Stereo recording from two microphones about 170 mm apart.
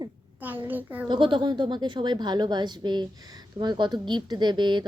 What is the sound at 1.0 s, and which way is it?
A woman's voice, 25° right (ahead or behind).